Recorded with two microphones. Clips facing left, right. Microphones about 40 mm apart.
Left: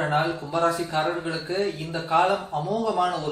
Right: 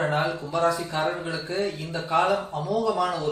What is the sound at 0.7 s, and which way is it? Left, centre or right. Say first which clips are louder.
Speech: left 2 dB; centre.